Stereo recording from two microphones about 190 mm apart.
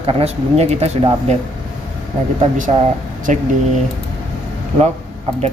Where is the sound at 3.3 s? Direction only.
40° right (ahead or behind).